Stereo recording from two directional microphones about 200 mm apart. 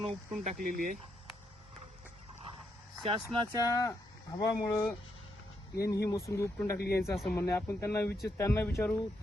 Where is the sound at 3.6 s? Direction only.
15° left (ahead or behind).